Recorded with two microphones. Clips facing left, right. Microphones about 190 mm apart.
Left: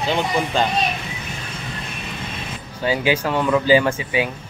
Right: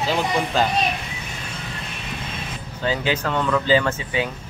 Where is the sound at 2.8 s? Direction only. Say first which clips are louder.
Left 3 dB; 10° left (ahead or behind).